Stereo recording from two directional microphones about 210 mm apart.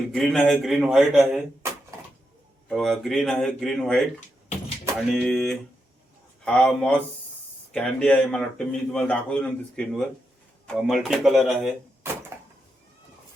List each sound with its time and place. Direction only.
0.1 s a man's voice: centre (ahead or behind)
2.6 s a man's voice: centre (ahead or behind)